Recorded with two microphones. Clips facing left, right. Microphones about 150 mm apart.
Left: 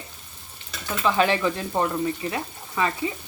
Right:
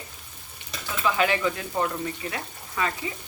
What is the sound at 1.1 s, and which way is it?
Speech, 30° left (ahead or behind).